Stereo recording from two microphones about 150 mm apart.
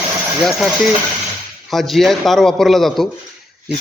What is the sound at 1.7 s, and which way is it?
A man's voice, centre (ahead or behind).